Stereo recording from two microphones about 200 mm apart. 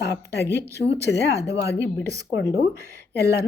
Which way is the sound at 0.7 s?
55° left (ahead or behind).